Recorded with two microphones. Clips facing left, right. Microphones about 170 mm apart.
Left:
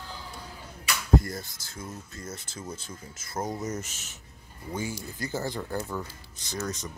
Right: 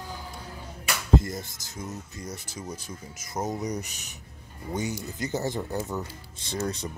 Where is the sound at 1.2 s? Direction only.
20° right (ahead or behind).